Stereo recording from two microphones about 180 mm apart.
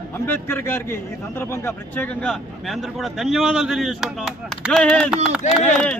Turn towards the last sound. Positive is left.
turn(degrees=40)  # may be behind; listen again after turning